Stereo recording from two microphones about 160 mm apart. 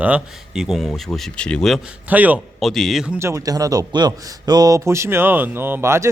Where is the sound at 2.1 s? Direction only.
10° right (ahead or behind).